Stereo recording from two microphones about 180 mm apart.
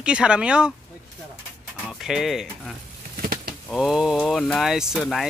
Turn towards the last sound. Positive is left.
turn(degrees=0)  # may be behind; listen again after turning